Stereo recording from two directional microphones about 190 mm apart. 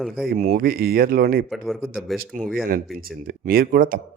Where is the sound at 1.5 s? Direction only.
Centre (ahead or behind).